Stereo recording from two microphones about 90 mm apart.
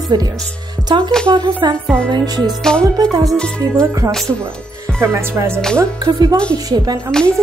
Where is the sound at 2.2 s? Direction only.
45° right (ahead or behind).